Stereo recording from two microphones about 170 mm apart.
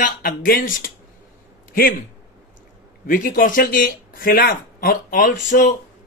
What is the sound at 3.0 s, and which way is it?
A man's voice, 55° left (ahead or behind).